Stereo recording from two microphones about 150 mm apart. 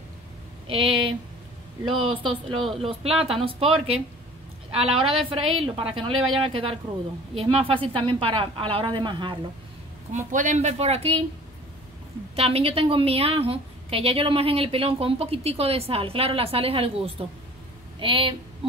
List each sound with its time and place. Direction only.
0.7 s a woman's voice: 35° right (ahead or behind)
2.2 s a woman's voice: 35° right (ahead or behind)
5.0 s a woman's voice: 40° right (ahead or behind)
10.1 s speech: 55° right (ahead or behind); by 11.2 s 40° right (ahead or behind)
12.4 s a woman's voice: 40° right (ahead or behind)
18.6 s a sound: 35° right (ahead or behind)